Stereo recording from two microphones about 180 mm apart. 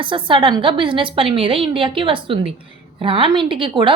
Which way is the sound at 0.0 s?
30° right (ahead or behind).